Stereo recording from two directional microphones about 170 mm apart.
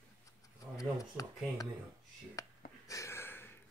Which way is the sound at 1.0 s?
20° left (ahead or behind).